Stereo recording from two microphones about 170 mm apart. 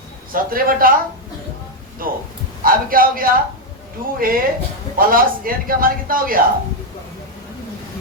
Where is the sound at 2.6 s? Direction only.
55° right (ahead or behind).